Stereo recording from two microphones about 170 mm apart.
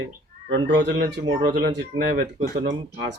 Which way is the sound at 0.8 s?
90° right.